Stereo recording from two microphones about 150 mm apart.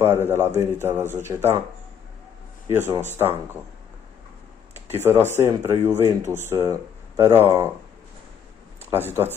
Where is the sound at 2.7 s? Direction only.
15° right (ahead or behind).